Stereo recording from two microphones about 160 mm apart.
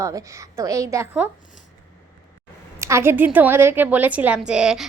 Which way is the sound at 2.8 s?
15° right (ahead or behind).